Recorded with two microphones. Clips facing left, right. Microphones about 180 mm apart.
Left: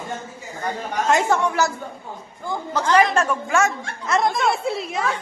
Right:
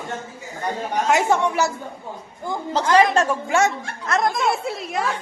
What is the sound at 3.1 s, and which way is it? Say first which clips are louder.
Speech: right 1 dB; 30° right (ahead or behind).